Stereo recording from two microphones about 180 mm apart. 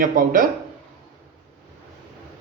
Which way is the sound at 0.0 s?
50° right (ahead or behind).